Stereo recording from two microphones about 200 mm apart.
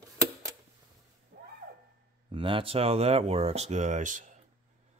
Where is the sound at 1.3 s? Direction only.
55° right (ahead or behind).